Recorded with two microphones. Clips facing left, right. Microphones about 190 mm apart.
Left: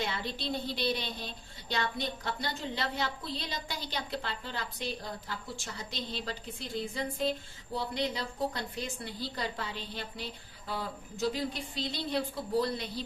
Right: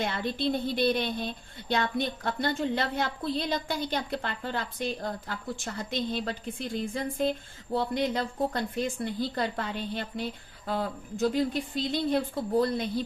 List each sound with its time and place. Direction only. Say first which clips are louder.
0.0 s a woman's voice: right 6 dB; 55° right (ahead or behind)